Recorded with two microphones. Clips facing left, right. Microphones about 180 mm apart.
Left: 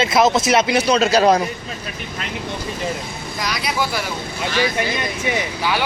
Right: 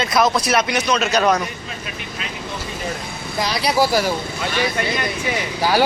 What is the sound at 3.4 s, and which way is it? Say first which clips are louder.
Speech: right 5 dB; 30° right (ahead or behind).